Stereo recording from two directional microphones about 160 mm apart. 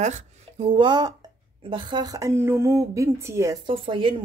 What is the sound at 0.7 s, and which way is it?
Speech, 30° right (ahead or behind).